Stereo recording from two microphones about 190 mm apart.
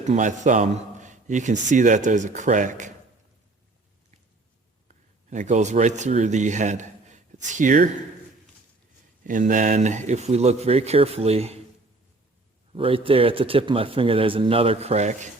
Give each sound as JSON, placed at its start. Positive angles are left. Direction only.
{"t": 0.0, "sound": "a man's voice", "side_deg": -40}
{"t": 4.9, "sound": "speech", "side_deg": -40}
{"t": 9.2, "sound": "a man's voice", "side_deg": -45}
{"t": 12.7, "sound": "speech", "side_deg": -30}